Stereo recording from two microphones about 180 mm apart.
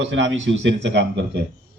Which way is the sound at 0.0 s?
90° right.